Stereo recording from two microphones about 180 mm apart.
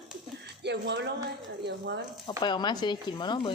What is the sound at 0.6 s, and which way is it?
Speech, 75° right (ahead or behind).